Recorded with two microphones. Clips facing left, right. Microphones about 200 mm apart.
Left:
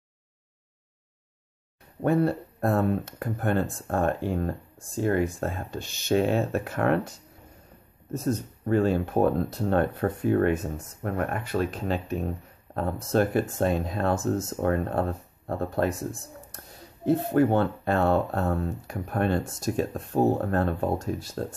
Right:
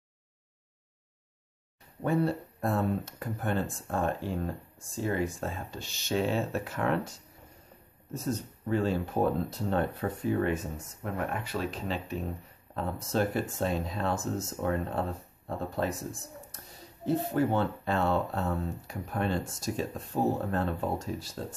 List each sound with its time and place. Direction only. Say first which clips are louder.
2.0 s speech: left 5 dB; 55° left (ahead or behind)
8.1 s speech: left 5 dB; 50° left (ahead or behind)